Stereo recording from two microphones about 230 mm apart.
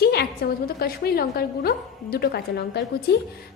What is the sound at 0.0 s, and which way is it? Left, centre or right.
A woman's voice, left.